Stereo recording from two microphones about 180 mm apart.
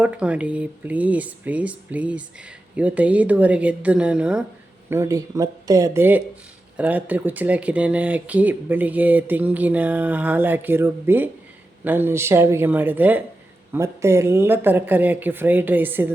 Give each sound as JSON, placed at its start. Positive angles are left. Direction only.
{"t": 0.0, "sound": "speech", "side_deg": -10}